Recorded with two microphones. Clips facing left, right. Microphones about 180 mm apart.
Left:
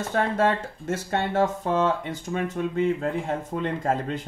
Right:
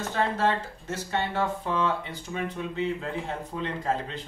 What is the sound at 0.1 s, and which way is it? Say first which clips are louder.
Speech: left 3 dB; 50° left (ahead or behind).